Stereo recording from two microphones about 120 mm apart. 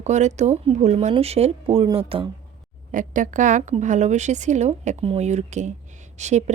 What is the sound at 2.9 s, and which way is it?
A woman's voice, 90° right.